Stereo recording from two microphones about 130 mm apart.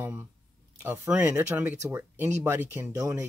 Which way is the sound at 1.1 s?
10° right (ahead or behind).